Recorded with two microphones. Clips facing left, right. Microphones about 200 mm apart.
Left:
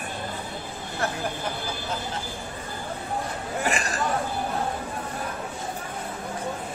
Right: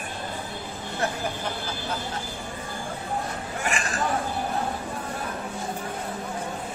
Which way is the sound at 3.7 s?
40° left (ahead or behind).